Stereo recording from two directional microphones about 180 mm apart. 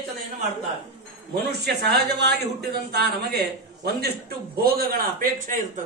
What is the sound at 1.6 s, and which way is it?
A man's voice, 65° right (ahead or behind).